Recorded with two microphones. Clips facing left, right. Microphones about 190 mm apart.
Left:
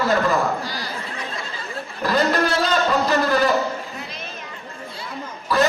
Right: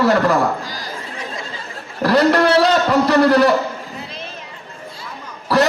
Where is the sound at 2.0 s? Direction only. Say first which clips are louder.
Right 6 dB; 70° right (ahead or behind).